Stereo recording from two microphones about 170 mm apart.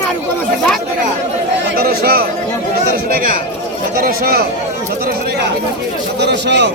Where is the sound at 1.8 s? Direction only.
60° right (ahead or behind).